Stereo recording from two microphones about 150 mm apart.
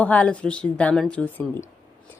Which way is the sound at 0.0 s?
10° left (ahead or behind).